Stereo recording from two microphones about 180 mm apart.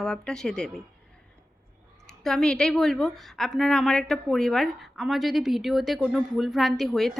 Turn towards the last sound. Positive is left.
turn(degrees=0)  # may be behind; listen again after turning